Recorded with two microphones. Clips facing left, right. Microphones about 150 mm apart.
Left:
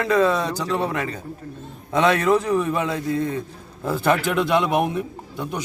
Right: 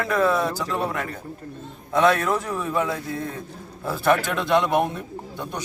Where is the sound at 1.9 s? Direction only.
15° left (ahead or behind).